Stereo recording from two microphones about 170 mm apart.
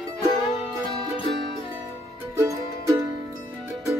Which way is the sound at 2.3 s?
15° right (ahead or behind).